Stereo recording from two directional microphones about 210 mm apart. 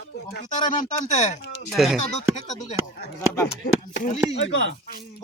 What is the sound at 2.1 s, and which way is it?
Speech, 35° left (ahead or behind).